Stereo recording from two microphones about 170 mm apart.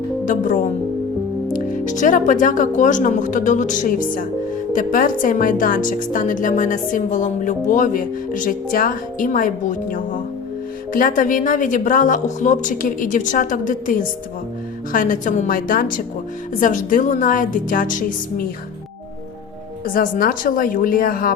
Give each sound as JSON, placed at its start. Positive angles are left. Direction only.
{"t": 0.3, "sound": "a woman's voice", "side_deg": 50}
{"t": 19.8, "sound": "a woman's voice", "side_deg": 55}